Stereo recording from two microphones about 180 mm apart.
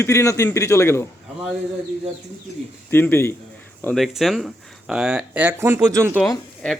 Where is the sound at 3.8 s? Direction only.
Centre (ahead or behind).